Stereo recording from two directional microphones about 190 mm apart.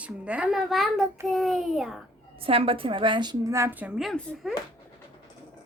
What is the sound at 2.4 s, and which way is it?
A woman's voice, 30° right (ahead or behind).